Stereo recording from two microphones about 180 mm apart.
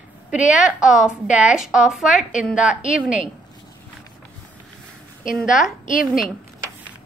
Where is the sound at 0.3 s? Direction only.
5° right (ahead or behind).